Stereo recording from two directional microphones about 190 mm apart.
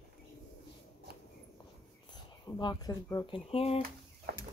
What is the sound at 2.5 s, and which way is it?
Speech, 20° left (ahead or behind).